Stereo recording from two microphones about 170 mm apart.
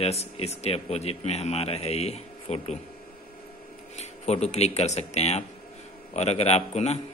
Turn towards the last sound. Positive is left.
turn(degrees=40)  # may be behind; listen again after turning